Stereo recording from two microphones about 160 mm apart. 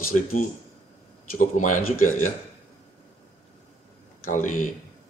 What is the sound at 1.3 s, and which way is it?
Speech, 50° left (ahead or behind).